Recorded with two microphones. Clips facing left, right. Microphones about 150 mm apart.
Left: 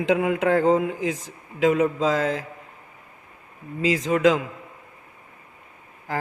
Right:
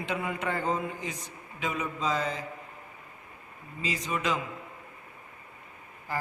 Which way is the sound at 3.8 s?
90° left.